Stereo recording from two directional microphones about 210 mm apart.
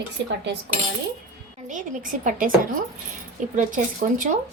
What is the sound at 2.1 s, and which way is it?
Speech, 40° right (ahead or behind).